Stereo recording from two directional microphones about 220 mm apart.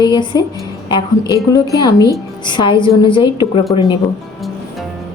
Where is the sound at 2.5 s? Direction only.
20° left (ahead or behind).